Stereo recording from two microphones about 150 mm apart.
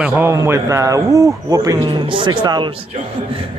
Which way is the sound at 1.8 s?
35° right (ahead or behind).